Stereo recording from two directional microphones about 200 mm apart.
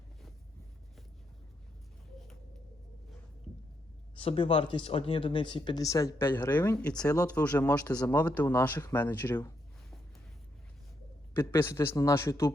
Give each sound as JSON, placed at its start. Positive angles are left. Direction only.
{"t": 4.1, "sound": "speech", "side_deg": 25}
{"t": 11.3, "sound": "speech", "side_deg": 10}